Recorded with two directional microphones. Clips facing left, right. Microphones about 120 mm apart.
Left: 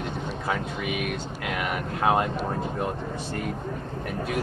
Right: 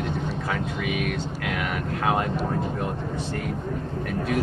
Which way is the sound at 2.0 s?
20° left (ahead or behind).